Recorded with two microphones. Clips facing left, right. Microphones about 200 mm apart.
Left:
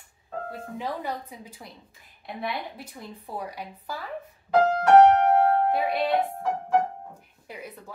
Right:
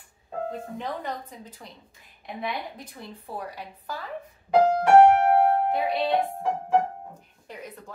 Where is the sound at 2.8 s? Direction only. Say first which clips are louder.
Left 1 dB; 10° left (ahead or behind).